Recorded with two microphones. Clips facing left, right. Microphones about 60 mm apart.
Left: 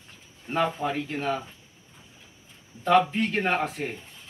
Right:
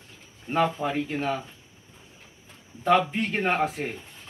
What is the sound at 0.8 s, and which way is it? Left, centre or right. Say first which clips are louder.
Speech: right 1 dB; centre.